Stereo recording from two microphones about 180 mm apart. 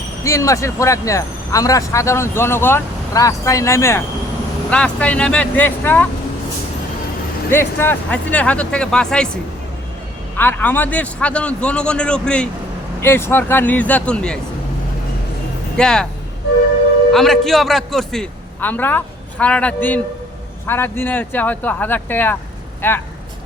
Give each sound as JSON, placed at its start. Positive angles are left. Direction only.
{"t": 0.3, "sound": "speech", "side_deg": 15}
{"t": 7.5, "sound": "speech", "side_deg": 10}
{"t": 15.8, "sound": "speech", "side_deg": 5}
{"t": 17.1, "sound": "a man's voice", "side_deg": 0}